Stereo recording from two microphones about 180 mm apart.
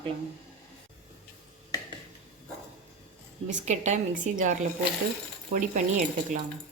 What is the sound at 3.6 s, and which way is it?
Speech, 40° right (ahead or behind).